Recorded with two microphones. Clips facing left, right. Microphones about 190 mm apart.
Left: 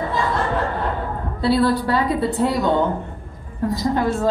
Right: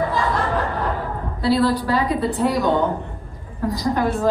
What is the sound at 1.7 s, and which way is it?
Speech, 25° left (ahead or behind).